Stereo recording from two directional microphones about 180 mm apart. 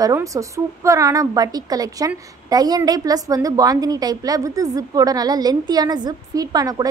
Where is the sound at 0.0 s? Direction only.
20° right (ahead or behind).